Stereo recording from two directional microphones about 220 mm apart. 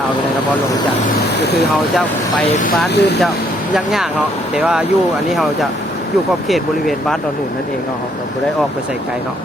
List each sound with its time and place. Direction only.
2.6 s speech: 40° left (ahead or behind)
4.5 s speech: 5° right (ahead or behind)
6.5 s speech: centre (ahead or behind)